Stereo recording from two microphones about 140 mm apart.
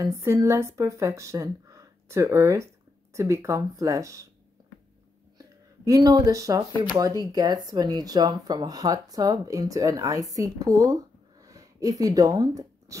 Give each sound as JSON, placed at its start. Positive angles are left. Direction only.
{"t": 0.0, "sound": "speech", "side_deg": -20}
{"t": 5.9, "sound": "speech", "side_deg": -25}